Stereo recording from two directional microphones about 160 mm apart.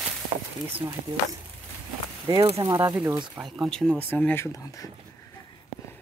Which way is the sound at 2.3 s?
30° right (ahead or behind).